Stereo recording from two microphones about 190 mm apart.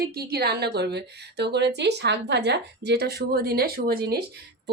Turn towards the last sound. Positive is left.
turn(degrees=-55)  # may be behind; listen again after turning